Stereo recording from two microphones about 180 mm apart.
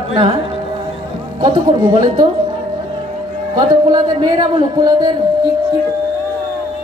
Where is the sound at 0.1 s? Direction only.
30° right (ahead or behind).